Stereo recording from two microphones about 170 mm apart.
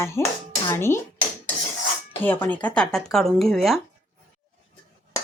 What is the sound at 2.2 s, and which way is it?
A woman's voice, 10° left (ahead or behind).